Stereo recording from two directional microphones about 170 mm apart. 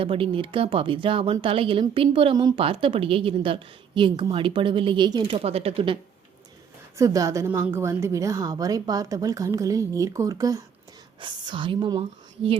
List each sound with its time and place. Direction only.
0.0 s a woman's voice: 30° right (ahead or behind)
6.9 s a woman's voice: 20° right (ahead or behind)